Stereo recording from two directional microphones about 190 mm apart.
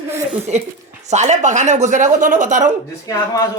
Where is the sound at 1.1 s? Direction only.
40° right (ahead or behind).